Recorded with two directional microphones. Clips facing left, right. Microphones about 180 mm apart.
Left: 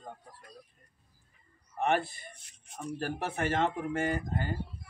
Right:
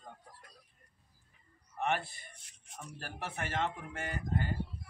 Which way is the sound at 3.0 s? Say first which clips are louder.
Left 8 dB; 40° left (ahead or behind).